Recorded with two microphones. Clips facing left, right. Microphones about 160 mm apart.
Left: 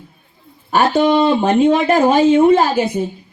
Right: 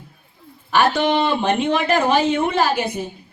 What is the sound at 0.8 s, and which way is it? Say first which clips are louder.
Speech: left 4 dB; 40° left (ahead or behind).